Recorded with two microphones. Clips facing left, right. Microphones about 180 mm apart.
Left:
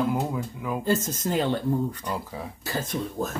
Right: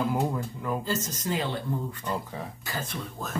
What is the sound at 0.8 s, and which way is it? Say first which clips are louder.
Speech: left 5 dB; 55° left (ahead or behind).